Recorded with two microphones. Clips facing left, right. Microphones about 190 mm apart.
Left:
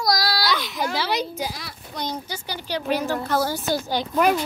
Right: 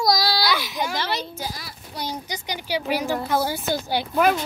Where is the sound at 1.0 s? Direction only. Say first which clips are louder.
Left 3 dB; 10° left (ahead or behind).